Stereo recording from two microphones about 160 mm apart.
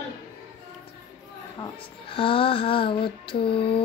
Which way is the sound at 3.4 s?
35° left (ahead or behind).